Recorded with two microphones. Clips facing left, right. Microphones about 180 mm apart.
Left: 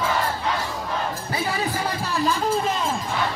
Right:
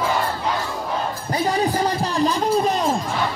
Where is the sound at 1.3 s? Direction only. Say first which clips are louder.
Right 8 dB; 40° right (ahead or behind).